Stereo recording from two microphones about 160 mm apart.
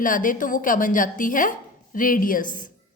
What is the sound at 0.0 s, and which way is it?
A woman's voice, 55° left (ahead or behind).